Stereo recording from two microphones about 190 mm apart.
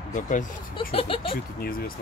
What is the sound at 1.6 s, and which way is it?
Speech, 50° left (ahead or behind).